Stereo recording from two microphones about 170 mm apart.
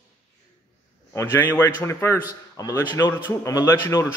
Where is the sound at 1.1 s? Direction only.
15° left (ahead or behind).